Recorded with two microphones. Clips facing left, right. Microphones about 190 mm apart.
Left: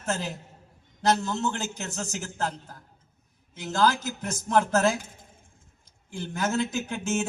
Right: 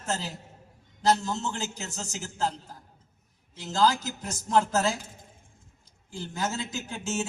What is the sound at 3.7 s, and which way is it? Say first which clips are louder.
A man's voice: even; 60° left (ahead or behind).